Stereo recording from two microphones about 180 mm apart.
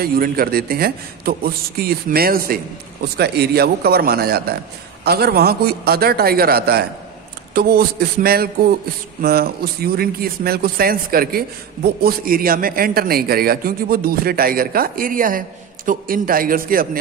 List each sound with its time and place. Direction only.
0.0 s a man's voice: 55° right (ahead or behind)